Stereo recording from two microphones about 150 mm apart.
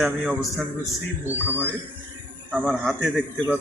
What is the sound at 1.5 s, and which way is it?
Speech, 15° right (ahead or behind).